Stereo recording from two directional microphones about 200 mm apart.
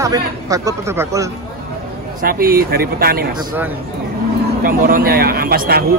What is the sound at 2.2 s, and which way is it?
A man's voice, 45° right (ahead or behind).